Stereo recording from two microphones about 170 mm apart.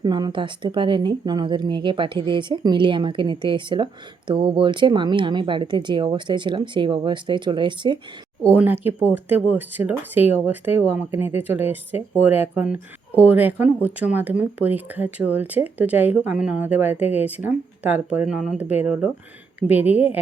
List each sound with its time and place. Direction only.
0.0 s speech: 25° right (ahead or behind)
8.4 s speech: 10° right (ahead or behind)